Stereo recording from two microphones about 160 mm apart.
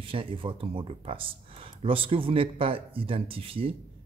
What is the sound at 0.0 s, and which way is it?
Speech, 35° right (ahead or behind).